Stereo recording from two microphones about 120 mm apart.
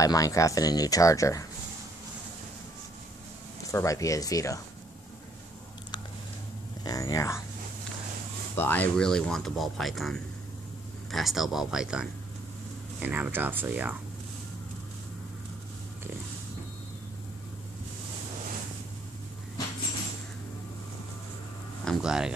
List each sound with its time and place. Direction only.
0.0 s speech: 30° left (ahead or behind)
3.6 s speech: 25° left (ahead or behind)
6.8 s speech: 30° left (ahead or behind)
8.5 s speech: 15° left (ahead or behind); by 13.9 s 15° right (ahead or behind)
21.8 s a sound: 5° right (ahead or behind)